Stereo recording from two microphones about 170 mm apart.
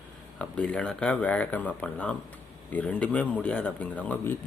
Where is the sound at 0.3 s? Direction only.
5° left (ahead or behind).